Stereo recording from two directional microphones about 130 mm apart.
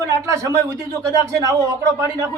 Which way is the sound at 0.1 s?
25° right (ahead or behind).